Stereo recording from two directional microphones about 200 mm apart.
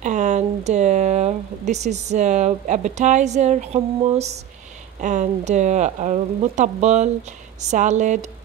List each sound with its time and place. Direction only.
0.0 s speech: 35° right (ahead or behind)